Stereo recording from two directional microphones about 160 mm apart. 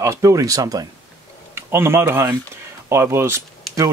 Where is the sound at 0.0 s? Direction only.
20° right (ahead or behind).